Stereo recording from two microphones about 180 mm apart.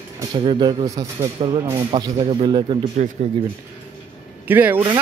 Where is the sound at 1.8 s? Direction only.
30° right (ahead or behind).